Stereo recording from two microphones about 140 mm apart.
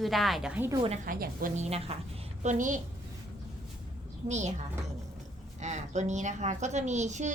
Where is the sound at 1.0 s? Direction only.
85° right.